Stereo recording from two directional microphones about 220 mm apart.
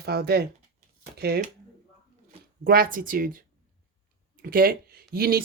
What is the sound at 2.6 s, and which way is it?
Speech, 40° right (ahead or behind).